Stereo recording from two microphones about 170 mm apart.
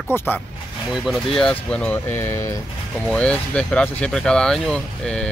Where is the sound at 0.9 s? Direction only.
Centre (ahead or behind).